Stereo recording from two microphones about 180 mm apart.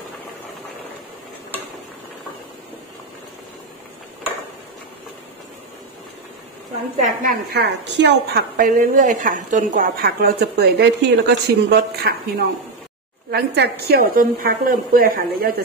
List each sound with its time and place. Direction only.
7.0 s a woman's voice: 55° right (ahead or behind)
13.3 s a woman's voice: 60° right (ahead or behind)